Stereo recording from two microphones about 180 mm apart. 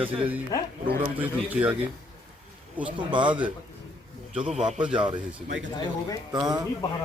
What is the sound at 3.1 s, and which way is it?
Speech, 25° right (ahead or behind).